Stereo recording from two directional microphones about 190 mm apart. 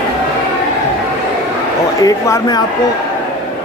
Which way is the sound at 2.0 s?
15° left (ahead or behind).